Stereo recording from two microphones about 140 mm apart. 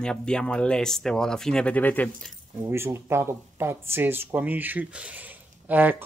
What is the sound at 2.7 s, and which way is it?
Speech, 20° right (ahead or behind).